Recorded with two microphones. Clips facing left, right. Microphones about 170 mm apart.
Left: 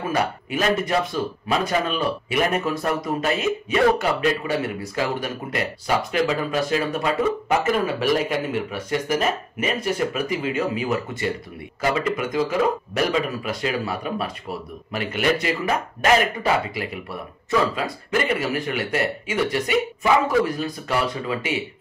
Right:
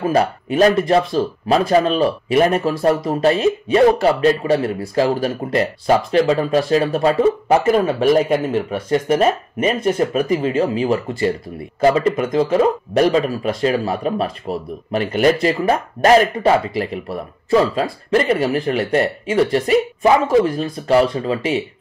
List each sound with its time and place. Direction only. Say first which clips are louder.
0.1 s speech: right 7 dB; 35° right (ahead or behind)